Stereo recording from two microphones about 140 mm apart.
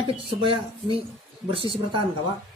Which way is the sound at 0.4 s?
40° right (ahead or behind).